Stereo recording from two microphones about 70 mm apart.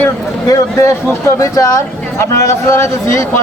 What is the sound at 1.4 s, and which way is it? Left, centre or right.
Speech, left.